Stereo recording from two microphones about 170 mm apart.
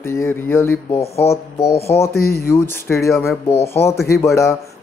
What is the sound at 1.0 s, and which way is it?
Speech, 35° left (ahead or behind).